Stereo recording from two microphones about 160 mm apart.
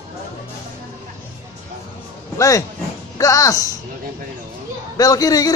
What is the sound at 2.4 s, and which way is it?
A man's voice, 20° left (ahead or behind).